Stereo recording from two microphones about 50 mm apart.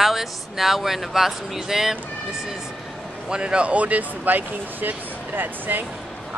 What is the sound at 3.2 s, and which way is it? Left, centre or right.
Speech, centre.